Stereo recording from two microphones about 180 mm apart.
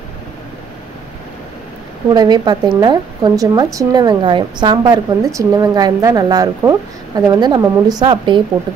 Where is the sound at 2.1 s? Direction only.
25° right (ahead or behind).